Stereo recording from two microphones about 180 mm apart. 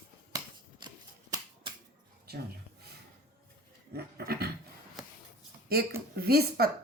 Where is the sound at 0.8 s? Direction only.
25° right (ahead or behind).